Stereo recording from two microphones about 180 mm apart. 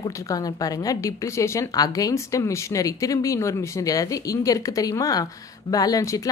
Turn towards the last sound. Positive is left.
turn(degrees=20)  # may be behind; listen again after turning